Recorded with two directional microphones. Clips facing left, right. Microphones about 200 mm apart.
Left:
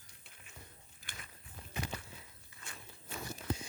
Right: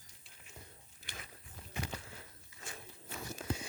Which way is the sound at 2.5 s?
55° left (ahead or behind).